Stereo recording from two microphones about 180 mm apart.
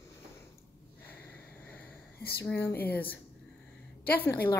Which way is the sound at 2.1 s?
60° left (ahead or behind).